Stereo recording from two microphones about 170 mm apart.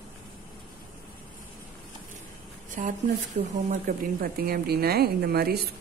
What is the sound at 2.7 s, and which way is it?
A woman's voice, 55° right (ahead or behind).